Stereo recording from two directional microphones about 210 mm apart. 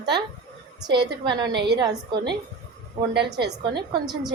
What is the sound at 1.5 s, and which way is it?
Speech, 55° right (ahead or behind).